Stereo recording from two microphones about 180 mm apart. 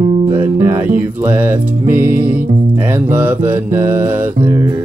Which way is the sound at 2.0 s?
50° right (ahead or behind).